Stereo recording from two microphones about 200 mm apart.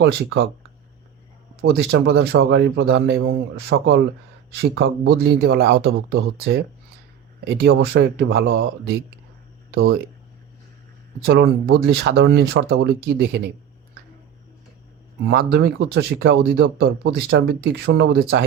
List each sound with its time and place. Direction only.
0.0 s speech: 60° right (ahead or behind)
1.6 s speech: 55° right (ahead or behind)
11.3 s speech: 55° right (ahead or behind)
15.3 s speech: 55° right (ahead or behind)